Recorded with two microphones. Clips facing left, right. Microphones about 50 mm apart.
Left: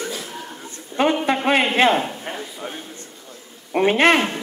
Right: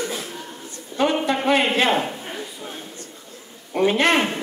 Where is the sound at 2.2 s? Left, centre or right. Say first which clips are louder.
Left 2 dB; centre.